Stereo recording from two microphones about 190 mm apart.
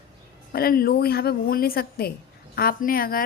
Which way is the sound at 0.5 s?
50° left (ahead or behind).